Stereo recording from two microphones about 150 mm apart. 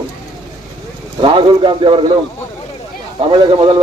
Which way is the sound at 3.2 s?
35° right (ahead or behind).